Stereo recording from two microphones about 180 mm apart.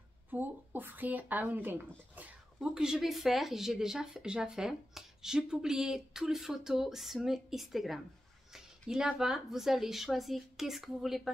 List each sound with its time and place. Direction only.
0.3 s speech: 10° right (ahead or behind)